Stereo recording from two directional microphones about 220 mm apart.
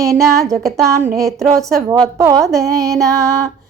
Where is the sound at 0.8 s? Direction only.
15° right (ahead or behind).